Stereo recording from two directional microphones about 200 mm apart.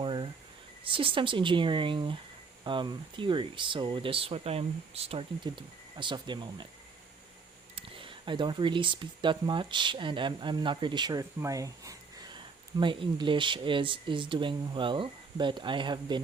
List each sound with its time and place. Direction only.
0.0 s cricket: 25° right (ahead or behind)
0.9 s speech: 25° right (ahead or behind)
7.8 s speech: 25° right (ahead or behind)